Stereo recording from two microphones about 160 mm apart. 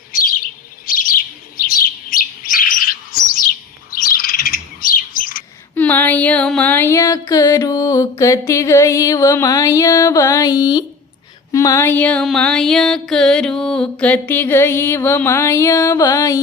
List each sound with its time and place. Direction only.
0.1 s chirp: 60° left (ahead or behind)
3.9 s bird: 65° left (ahead or behind)
5.7 s music: 10° left (ahead or behind)